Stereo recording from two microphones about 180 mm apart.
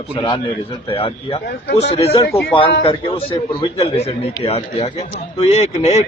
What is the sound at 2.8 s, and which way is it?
A man's voice, 30° left (ahead or behind).